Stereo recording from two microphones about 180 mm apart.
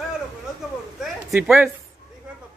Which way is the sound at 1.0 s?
Centre (ahead or behind).